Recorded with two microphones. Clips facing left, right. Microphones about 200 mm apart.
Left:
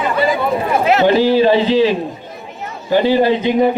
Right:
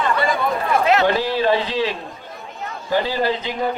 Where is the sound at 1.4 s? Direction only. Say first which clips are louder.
Left 7 dB; 20° left (ahead or behind).